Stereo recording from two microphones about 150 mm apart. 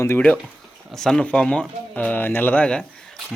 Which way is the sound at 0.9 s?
5° left (ahead or behind).